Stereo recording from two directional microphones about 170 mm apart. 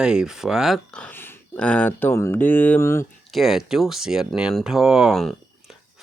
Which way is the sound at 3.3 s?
Centre (ahead or behind).